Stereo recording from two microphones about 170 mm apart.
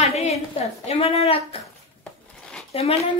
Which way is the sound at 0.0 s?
40° left (ahead or behind).